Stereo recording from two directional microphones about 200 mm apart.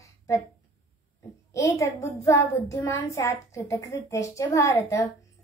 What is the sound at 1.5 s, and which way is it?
A child's voice, 15° left (ahead or behind).